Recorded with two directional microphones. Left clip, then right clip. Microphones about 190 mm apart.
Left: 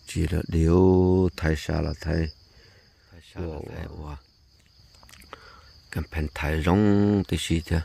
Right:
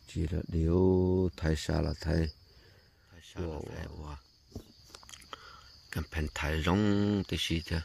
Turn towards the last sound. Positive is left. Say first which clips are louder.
# left 5 dB
turn(degrees=25)  # may be behind; listen again after turning